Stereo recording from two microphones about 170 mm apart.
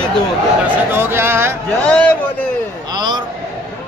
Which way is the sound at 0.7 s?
15° right (ahead or behind).